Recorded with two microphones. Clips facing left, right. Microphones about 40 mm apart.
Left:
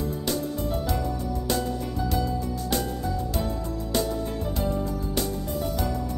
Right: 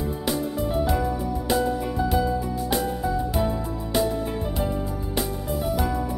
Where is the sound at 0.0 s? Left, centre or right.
Centre.